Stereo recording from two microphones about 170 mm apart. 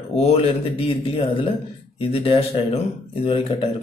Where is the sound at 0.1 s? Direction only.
35° left (ahead or behind).